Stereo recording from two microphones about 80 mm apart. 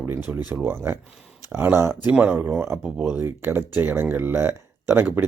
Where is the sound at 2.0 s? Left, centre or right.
Centre.